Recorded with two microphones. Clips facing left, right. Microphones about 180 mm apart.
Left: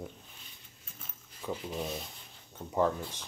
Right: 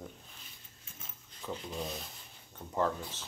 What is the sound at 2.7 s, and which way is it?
Speech, 15° left (ahead or behind).